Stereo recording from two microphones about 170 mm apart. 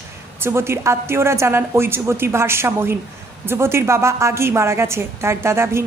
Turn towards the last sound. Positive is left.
turn(degrees=-15)  # may be behind; listen again after turning